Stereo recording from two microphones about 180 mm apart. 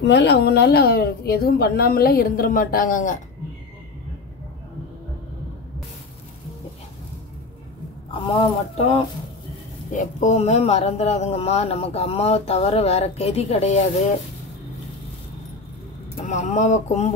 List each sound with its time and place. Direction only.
0.0 s a woman's voice: 70° left (ahead or behind); by 3.2 s 45° left (ahead or behind)
8.1 s speech: 30° left (ahead or behind)
9.9 s speech: 40° left (ahead or behind)
16.2 s speech: 40° left (ahead or behind)